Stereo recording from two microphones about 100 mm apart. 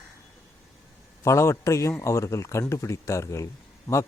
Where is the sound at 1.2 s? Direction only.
30° left (ahead or behind).